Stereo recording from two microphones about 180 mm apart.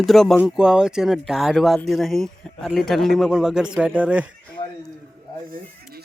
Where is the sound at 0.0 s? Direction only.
Centre (ahead or behind).